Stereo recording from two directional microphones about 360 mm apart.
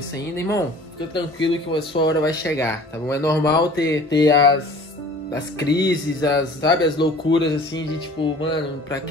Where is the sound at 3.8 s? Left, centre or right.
Left.